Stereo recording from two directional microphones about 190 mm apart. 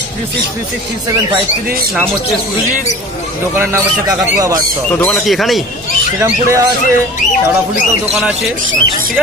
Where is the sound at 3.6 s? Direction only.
15° right (ahead or behind).